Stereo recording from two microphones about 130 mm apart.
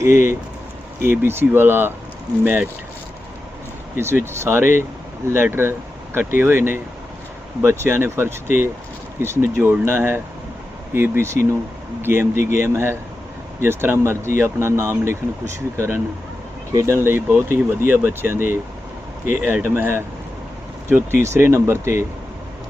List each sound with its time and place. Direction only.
0.0 s speech: 20° right (ahead or behind)
3.9 s speech: 20° right (ahead or behind)
16.7 s speech: 20° right (ahead or behind)